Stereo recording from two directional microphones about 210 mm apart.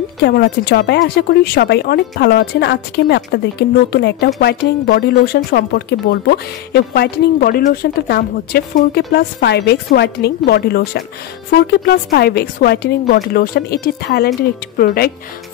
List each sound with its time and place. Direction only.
0.2 s speech: 50° left (ahead or behind)